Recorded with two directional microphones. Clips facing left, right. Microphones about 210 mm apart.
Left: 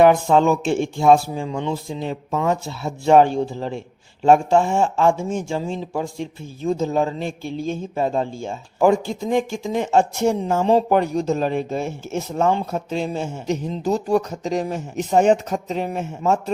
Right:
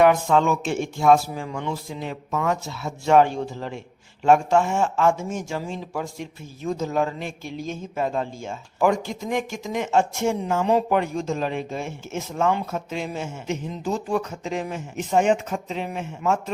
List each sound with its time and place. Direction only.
0.0 s speech: 30° left (ahead or behind)